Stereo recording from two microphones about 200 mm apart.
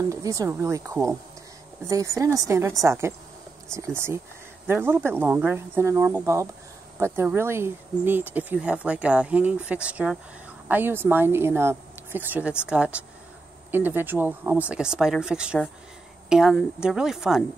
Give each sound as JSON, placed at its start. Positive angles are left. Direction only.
{"t": 0.0, "sound": "speech", "side_deg": -15}